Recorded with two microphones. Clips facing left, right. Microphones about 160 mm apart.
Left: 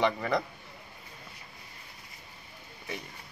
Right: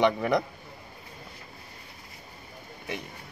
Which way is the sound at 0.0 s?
20° right (ahead or behind).